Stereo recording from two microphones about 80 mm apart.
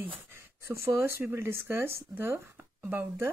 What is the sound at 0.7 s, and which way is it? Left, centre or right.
Speech, right.